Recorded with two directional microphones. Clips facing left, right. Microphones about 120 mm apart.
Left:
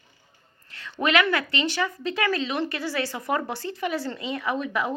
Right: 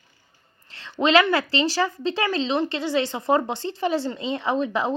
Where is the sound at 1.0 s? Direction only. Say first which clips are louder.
Right 4 dB; 25° right (ahead or behind).